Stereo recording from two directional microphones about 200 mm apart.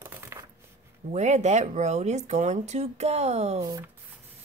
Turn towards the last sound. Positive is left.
turn(degrees=-20)  # may be behind; listen again after turning